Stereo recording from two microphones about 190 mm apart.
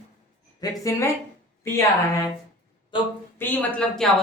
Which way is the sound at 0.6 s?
20° left (ahead or behind).